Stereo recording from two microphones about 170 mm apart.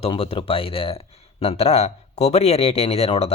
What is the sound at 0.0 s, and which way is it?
Speech, 35° left (ahead or behind).